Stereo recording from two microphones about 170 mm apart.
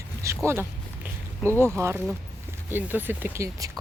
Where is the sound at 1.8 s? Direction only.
15° right (ahead or behind).